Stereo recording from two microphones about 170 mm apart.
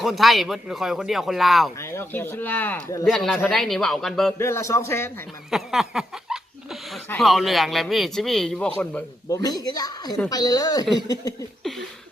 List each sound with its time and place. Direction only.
0.0 s a man's voice: centre (ahead or behind)
1.8 s a man's voice: 15° left (ahead or behind)
4.4 s speech: 15° left (ahead or behind)
5.5 s a man's voice: centre (ahead or behind)
9.3 s speech: 20° left (ahead or behind)